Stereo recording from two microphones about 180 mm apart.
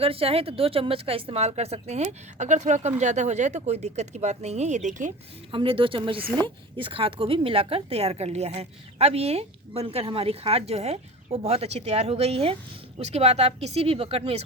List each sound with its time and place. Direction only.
0.0 s speech: 30° right (ahead or behind)
5.5 s speech: 30° right (ahead or behind)